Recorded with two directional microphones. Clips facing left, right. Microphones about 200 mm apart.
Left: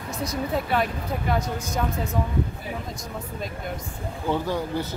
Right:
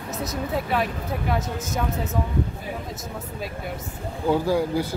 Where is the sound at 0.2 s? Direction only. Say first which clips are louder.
Left 1 dB; centre (ahead or behind).